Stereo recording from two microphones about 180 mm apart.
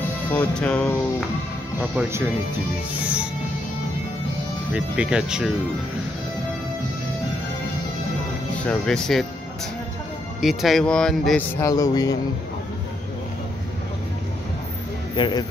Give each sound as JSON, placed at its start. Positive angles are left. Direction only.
{"t": 0.3, "sound": "music", "side_deg": 10}
{"t": 2.0, "sound": "speech", "side_deg": -10}
{"t": 4.7, "sound": "speech", "side_deg": -5}
{"t": 8.6, "sound": "speech", "side_deg": 5}
{"t": 10.4, "sound": "speech", "side_deg": 0}
{"t": 11.6, "sound": "a man's voice", "side_deg": 20}
{"t": 15.1, "sound": "a man's voice", "side_deg": 25}